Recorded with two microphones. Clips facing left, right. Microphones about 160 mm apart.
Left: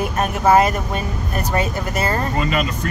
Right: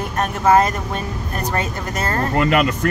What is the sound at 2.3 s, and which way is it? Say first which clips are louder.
Speech: right 4 dB; 65° right (ahead or behind).